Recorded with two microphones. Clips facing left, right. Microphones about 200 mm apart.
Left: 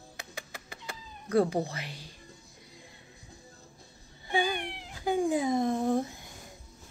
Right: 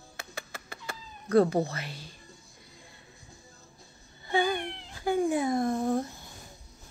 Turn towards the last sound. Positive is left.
turn(degrees=15)  # may be behind; listen again after turning